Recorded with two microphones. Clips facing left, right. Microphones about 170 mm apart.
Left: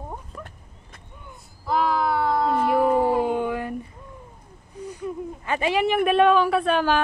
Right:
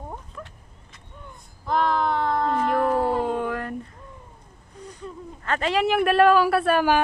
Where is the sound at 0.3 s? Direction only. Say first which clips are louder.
Left 1 dB; 40° left (ahead or behind).